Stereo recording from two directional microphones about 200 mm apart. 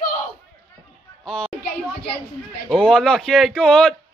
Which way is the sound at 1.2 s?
5° left (ahead or behind).